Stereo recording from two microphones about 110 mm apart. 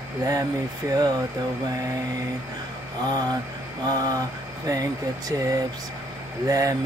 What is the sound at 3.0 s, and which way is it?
Speech, 40° right (ahead or behind).